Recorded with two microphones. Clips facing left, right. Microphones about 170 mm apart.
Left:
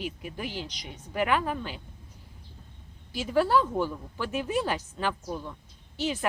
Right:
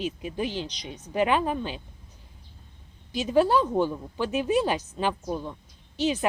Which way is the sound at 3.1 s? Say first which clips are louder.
Right 3 dB; 20° right (ahead or behind).